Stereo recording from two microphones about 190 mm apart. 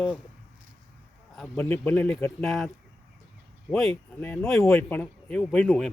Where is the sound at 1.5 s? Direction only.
10° left (ahead or behind).